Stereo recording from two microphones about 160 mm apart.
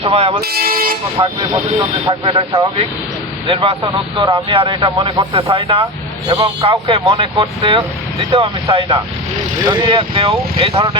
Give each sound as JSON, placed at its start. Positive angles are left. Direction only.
{"t": 0.0, "sound": "speech", "side_deg": -40}
{"t": 0.4, "sound": "speech", "side_deg": -70}
{"t": 1.2, "sound": "speech", "side_deg": -30}
{"t": 5.5, "sound": "speech", "side_deg": -35}